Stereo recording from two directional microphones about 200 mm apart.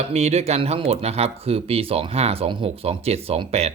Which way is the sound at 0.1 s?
35° right (ahead or behind).